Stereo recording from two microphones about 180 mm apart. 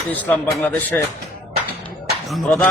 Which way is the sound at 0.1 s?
10° left (ahead or behind).